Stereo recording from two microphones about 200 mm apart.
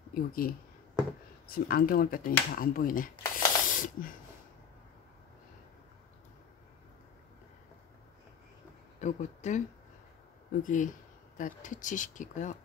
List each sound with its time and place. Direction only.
0.1 s speech: 45° left (ahead or behind)
3.3 s spray: 40° left (ahead or behind)
9.0 s speech: 35° left (ahead or behind)
10.6 s speech: 40° left (ahead or behind)